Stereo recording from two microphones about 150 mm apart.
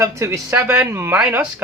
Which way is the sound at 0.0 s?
20° right (ahead or behind).